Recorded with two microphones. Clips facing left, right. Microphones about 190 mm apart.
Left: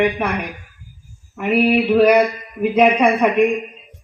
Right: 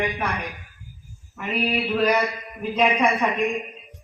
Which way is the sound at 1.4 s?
60° left (ahead or behind).